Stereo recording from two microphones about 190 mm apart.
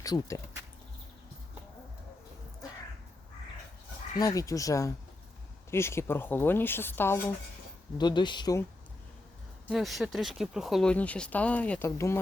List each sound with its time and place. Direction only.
0.0 s speech: 20° left (ahead or behind)
4.2 s speech: 20° left (ahead or behind)
7.9 s speech: 25° left (ahead or behind)
9.6 s speech: centre (ahead or behind); by 12.2 s 15° left (ahead or behind)